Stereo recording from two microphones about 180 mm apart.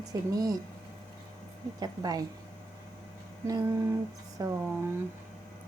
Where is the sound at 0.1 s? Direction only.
20° right (ahead or behind).